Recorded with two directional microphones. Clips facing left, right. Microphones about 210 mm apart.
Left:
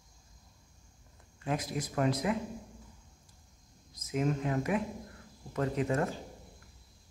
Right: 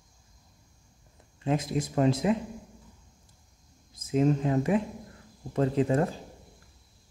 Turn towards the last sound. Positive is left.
turn(degrees=-30)  # may be behind; listen again after turning